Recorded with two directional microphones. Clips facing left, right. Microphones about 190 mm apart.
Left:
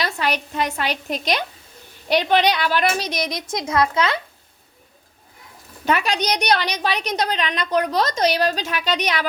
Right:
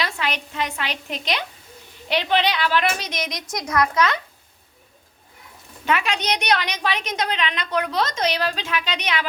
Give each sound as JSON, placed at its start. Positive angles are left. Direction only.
{"t": 0.0, "sound": "a woman's voice", "side_deg": 40}
{"t": 5.8, "sound": "a woman's voice", "side_deg": 40}